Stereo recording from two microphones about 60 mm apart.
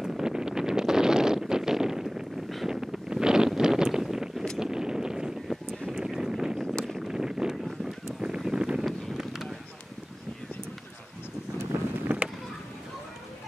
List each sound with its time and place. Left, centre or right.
0.0 s wind noise: centre
4.6 s a sound: centre
6.6 s boat: centre
7.1 s wind noise: centre
8.4 s wind: centre
12.1 s a sound: right